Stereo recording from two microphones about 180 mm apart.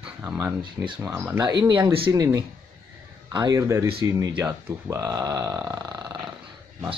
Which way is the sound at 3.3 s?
20° right (ahead or behind).